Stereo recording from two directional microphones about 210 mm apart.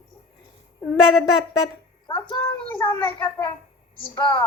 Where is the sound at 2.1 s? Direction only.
10° left (ahead or behind).